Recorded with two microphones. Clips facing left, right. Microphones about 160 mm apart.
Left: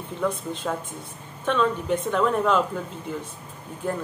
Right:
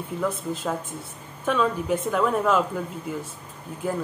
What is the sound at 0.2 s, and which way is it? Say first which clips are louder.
Speech: left 1 dB; centre (ahead or behind).